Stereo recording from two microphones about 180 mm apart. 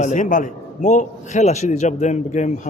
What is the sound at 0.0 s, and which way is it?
A man's voice, 40° left (ahead or behind).